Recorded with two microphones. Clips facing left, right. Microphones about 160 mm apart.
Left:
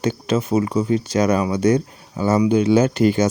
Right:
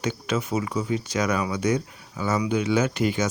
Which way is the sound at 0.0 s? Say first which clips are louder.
Left 6 dB; 30° left (ahead or behind).